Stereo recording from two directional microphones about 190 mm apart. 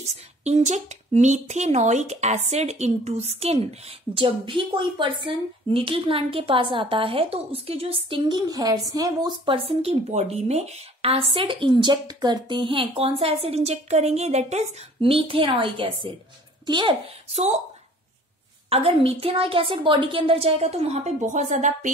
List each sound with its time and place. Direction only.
0.0 s a woman's voice: 35° right (ahead or behind)
18.7 s speech: 30° right (ahead or behind)